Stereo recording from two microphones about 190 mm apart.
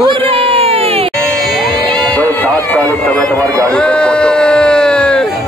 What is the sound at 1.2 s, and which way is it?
Music, centre (ahead or behind).